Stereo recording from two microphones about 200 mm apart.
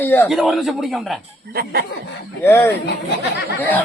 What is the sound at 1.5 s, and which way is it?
Speech, 50° right (ahead or behind).